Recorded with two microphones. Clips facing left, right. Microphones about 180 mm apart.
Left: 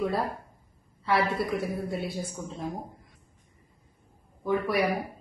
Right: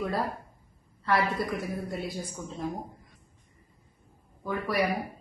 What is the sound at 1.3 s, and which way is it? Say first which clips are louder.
Speech: left 2 dB; centre (ahead or behind).